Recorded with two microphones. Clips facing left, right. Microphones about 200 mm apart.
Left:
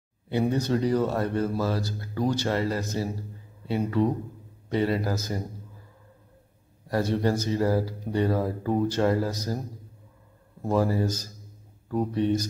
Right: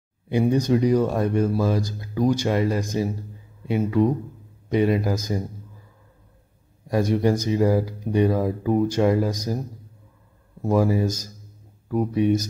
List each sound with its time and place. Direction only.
0.3 s speech: 15° right (ahead or behind)
6.9 s speech: 15° right (ahead or behind)
10.7 s speech: 15° right (ahead or behind)